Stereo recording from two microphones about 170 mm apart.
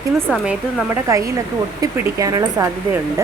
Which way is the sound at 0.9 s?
20° right (ahead or behind).